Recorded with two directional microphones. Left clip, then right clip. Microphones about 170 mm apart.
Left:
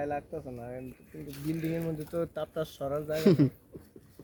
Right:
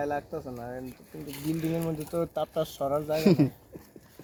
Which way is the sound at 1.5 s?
35° left (ahead or behind).